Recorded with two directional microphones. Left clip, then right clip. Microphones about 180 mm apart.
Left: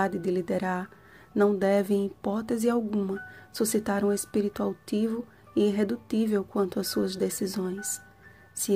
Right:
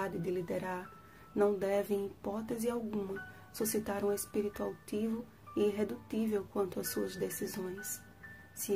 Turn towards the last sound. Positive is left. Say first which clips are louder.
# left 8 dB
turn(degrees=35)  # may be behind; listen again after turning